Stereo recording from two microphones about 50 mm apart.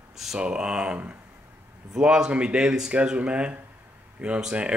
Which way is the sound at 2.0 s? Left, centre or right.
Centre.